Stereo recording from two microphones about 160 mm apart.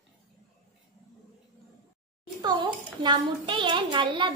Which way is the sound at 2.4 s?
25° right (ahead or behind).